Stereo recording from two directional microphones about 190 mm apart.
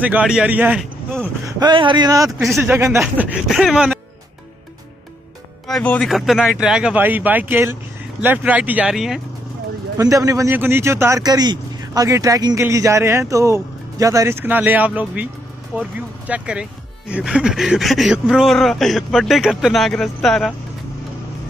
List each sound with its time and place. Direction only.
0.0 s a man's voice: 5° right (ahead or behind)
5.7 s a man's voice: 5° left (ahead or behind)
9.9 s a man's voice: 15° right (ahead or behind); by 20.5 s centre (ahead or behind)